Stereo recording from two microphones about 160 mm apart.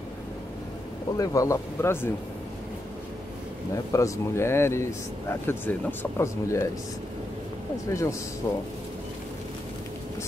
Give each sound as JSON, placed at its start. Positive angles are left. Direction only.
{"t": 1.1, "sound": "speech", "side_deg": 20}
{"t": 3.7, "sound": "speech", "side_deg": 20}
{"t": 7.9, "sound": "speech", "side_deg": 20}